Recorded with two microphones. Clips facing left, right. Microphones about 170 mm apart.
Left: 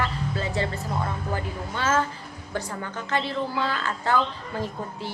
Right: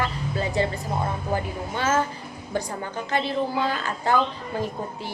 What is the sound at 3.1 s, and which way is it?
A woman's voice, 15° right (ahead or behind).